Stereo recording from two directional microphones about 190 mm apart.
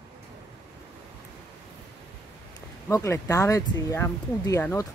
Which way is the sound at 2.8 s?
15° left (ahead or behind).